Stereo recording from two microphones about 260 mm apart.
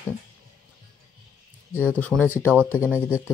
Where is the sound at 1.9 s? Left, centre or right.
Centre.